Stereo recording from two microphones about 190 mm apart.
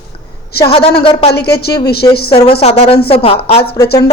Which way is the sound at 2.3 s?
30° left (ahead or behind).